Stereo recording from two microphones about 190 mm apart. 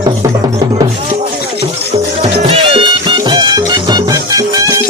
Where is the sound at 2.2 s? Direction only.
30° right (ahead or behind).